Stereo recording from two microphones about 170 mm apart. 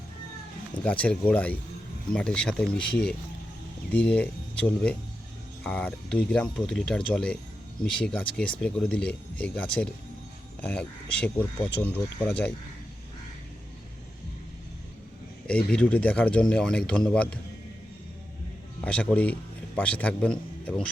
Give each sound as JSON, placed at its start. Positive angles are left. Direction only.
{"t": 0.9, "sound": "speech", "side_deg": 10}
{"t": 15.4, "sound": "speech", "side_deg": 5}
{"t": 18.8, "sound": "a man's voice", "side_deg": 5}